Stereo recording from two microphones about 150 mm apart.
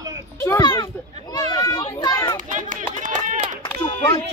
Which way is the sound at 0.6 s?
30° left (ahead or behind).